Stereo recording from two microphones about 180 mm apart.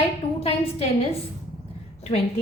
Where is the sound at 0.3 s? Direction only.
30° left (ahead or behind).